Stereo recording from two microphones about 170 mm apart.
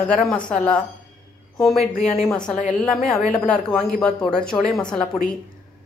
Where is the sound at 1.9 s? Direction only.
45° left (ahead or behind).